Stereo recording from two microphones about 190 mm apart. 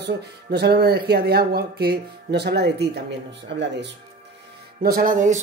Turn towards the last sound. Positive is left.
turn(degrees=-40)  # may be behind; listen again after turning